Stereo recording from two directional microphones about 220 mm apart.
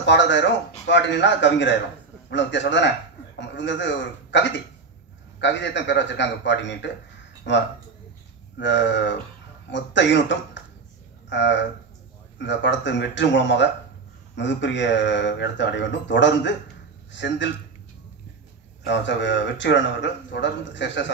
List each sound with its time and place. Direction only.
0.0 s speech: 55° left (ahead or behind)
18.9 s speech: 55° left (ahead or behind)